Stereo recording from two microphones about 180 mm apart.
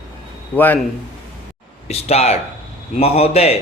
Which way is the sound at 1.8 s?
35° left (ahead or behind).